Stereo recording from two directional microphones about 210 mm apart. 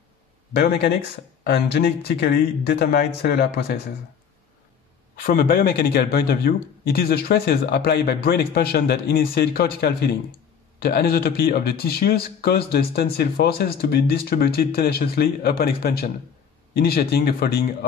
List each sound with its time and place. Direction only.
0.5 s speech: 50° left (ahead or behind)
5.1 s speech: 45° left (ahead or behind)